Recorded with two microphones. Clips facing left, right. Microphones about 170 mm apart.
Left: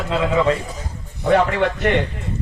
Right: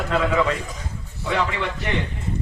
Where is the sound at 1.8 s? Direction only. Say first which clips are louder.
Left 7 dB; 70° left (ahead or behind).